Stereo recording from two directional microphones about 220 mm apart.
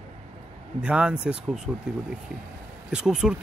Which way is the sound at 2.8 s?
5° right (ahead or behind).